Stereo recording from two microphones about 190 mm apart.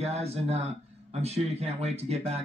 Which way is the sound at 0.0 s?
35° right (ahead or behind).